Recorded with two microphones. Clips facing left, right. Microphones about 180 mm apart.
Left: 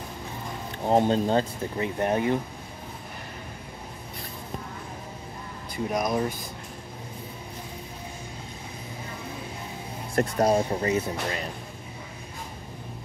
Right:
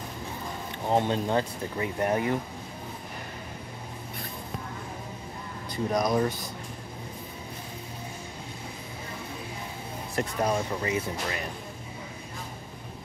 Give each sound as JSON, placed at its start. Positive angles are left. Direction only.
{"t": 0.8, "sound": "speech", "side_deg": 35}
{"t": 5.9, "sound": "speech", "side_deg": 5}
{"t": 10.4, "sound": "speech", "side_deg": 35}